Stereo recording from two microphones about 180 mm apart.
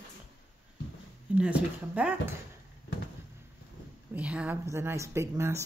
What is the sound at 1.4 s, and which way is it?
Speech, 5° right (ahead or behind).